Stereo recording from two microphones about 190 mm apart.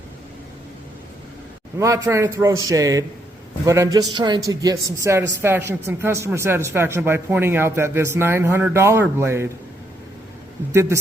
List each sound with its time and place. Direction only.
1.8 s speech: 15° right (ahead or behind)